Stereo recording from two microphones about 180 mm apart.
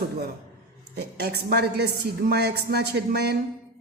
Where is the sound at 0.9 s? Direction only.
65° right (ahead or behind).